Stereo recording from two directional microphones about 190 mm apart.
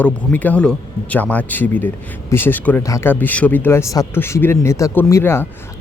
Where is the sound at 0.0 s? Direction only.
10° left (ahead or behind).